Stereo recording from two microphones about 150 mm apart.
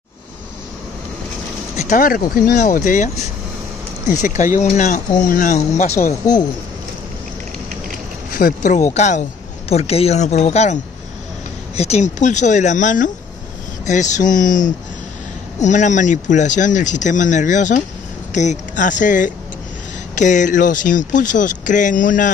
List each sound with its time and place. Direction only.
1.8 s speech: 60° left (ahead or behind)
8.4 s speech: 65° left (ahead or behind)
8.9 s speech: 50° left (ahead or behind)